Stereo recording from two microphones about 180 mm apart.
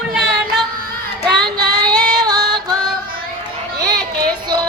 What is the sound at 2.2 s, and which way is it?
Music, 20° right (ahead or behind).